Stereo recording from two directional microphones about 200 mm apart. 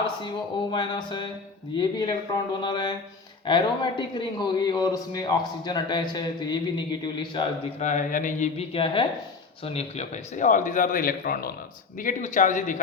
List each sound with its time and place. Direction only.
0.7 s a man's voice: 25° left (ahead or behind)
7.8 s speech: 35° left (ahead or behind)